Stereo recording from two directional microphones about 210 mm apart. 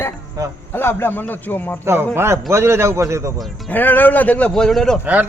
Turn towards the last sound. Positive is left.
turn(degrees=0)  # may be behind; listen again after turning